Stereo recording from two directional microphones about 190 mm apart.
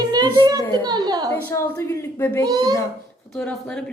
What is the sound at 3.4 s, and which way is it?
Mantra, 5° left (ahead or behind).